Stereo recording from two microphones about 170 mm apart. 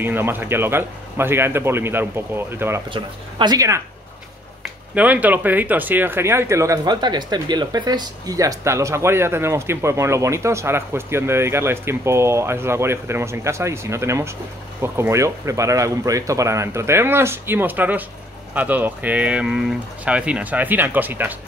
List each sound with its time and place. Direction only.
0.0 s speech: 10° right (ahead or behind)
2.9 s speech: 25° right (ahead or behind)
4.9 s speech: 10° right (ahead or behind)